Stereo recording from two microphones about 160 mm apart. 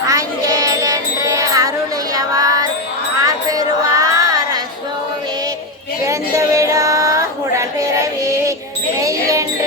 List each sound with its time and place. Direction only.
0.0 s music: 20° right (ahead or behind)
2.1 s child singing: 20° right (ahead or behind)
3.2 s music: 20° right (ahead or behind)
6.1 s music: 20° right (ahead or behind)